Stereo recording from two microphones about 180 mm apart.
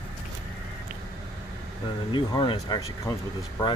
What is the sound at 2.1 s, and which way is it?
Speech, 25° left (ahead or behind).